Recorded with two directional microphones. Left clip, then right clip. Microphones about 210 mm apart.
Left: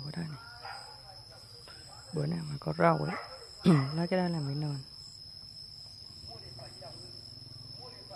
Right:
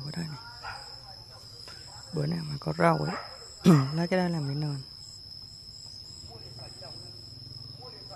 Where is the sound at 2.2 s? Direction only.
5° left (ahead or behind).